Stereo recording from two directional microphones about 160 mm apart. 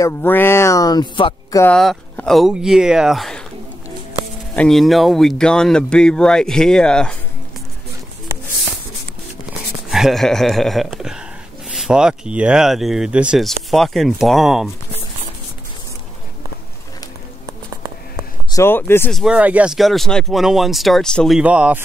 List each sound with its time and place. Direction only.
0.0 s speech: 15° left (ahead or behind)
1.6 s speech: 5° left (ahead or behind)
4.6 s speech: centre (ahead or behind)
9.8 s speech: centre (ahead or behind)
18.5 s speech: 15° left (ahead or behind)
19.1 s speech: 5° right (ahead or behind)
21.4 s speech: 10° right (ahead or behind)